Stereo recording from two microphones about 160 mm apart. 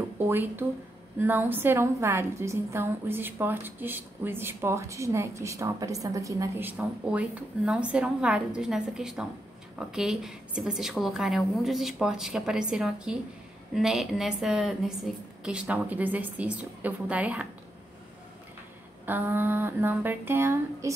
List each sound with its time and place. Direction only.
0.3 s a woman's voice: 15° right (ahead or behind)
19.0 s a woman's voice: 10° right (ahead or behind)